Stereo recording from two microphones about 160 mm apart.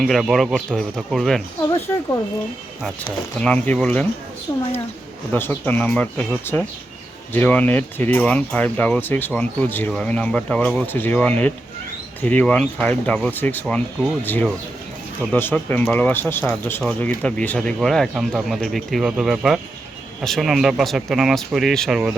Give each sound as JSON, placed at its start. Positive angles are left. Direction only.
{"t": 0.0, "sound": "speech", "side_deg": 0}
{"t": 3.4, "sound": "speech", "side_deg": 5}
{"t": 4.5, "sound": "a woman's voice", "side_deg": 20}